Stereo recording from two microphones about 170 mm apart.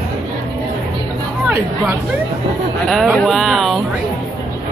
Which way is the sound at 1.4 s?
5° right (ahead or behind).